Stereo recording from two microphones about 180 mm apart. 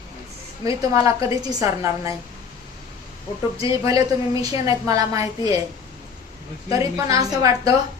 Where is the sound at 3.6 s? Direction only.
20° right (ahead or behind).